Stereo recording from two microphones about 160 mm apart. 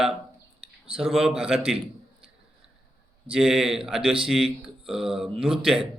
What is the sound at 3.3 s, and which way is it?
Speech, centre (ahead or behind).